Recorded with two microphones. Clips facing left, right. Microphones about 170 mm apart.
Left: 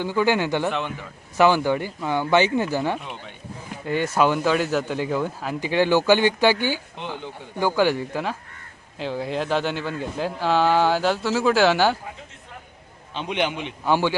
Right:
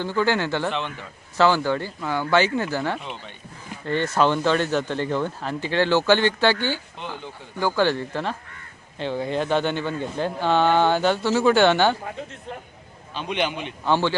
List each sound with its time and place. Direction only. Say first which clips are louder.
0.0 s speech: left 1 dB; 15° left (ahead or behind)
13.1 s speech: left 1 dB; 15° left (ahead or behind)